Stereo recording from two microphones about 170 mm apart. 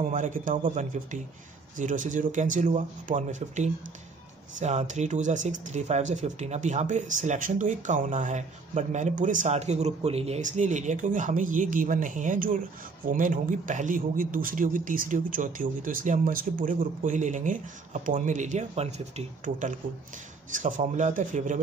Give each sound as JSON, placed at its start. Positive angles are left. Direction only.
{"t": 0.0, "sound": "speech", "side_deg": -50}